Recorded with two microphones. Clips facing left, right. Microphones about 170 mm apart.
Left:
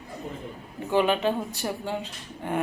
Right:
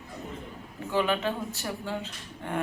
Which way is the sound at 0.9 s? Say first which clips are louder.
Left 4 dB; 20° left (ahead or behind).